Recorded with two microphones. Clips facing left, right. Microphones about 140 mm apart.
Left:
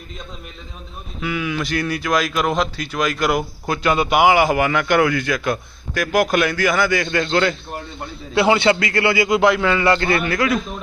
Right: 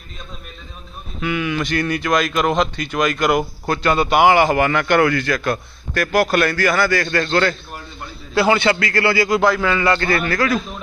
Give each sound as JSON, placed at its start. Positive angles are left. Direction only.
{"t": 1.2, "sound": "a man's voice", "side_deg": 0}